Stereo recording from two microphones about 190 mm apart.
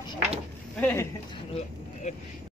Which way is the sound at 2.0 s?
35° left (ahead or behind).